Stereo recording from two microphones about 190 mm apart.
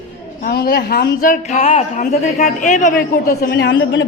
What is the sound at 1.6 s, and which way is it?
A man's voice, 35° left (ahead or behind).